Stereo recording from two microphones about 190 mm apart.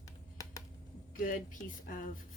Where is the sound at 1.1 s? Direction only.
45° left (ahead or behind).